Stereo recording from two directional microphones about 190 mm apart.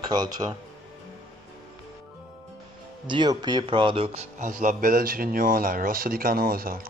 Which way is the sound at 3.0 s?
25° right (ahead or behind).